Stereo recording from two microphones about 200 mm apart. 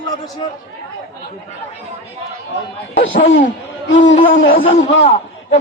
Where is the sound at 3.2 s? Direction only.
65° left (ahead or behind).